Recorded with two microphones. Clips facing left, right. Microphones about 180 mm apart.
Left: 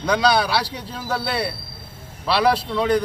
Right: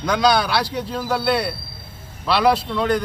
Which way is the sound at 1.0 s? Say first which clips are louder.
Right 3 dB; centre (ahead or behind).